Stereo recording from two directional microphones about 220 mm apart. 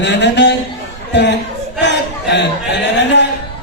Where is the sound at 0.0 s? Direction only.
50° left (ahead or behind).